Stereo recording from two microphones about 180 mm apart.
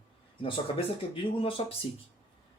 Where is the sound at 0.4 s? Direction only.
30° left (ahead or behind).